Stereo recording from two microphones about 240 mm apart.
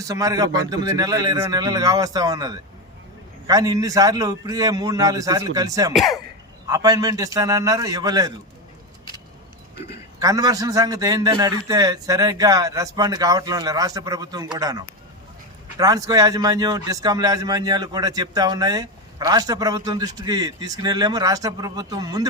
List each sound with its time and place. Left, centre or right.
0.1 s a man's voice: centre
5.9 s speech: centre
6.7 s a man's voice: centre
10.2 s a man's voice: centre